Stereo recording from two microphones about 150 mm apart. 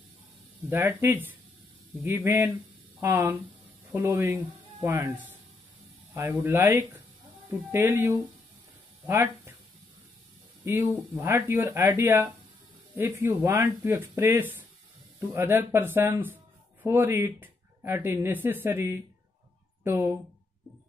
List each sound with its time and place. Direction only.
0.7 s speech: 15° right (ahead or behind)
10.6 s speech: 15° right (ahead or behind)